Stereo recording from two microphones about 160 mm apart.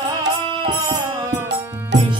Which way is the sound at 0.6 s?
20° right (ahead or behind).